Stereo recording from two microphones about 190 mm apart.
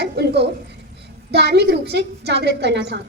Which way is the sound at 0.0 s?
60° right (ahead or behind).